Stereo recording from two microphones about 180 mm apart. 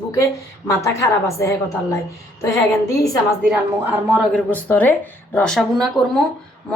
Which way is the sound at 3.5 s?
10° right (ahead or behind).